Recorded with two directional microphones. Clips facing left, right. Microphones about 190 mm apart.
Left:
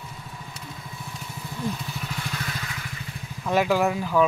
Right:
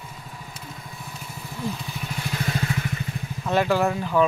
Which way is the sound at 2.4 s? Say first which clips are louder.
Right 7 dB; 30° right (ahead or behind).